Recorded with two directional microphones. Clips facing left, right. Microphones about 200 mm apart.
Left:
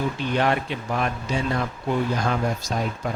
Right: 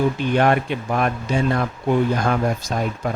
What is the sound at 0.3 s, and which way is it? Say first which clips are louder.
Speech: right 4 dB; 55° right (ahead or behind).